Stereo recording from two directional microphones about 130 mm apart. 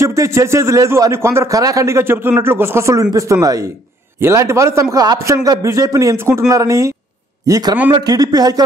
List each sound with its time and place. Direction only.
0.0 s a man's voice: 20° right (ahead or behind)